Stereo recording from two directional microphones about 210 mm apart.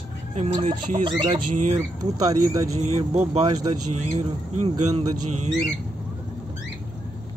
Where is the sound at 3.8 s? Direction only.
90° right.